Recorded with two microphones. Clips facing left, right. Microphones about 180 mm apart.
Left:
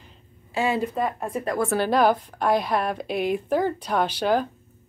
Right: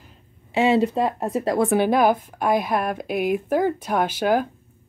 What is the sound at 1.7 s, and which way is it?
A woman's voice, 15° right (ahead or behind).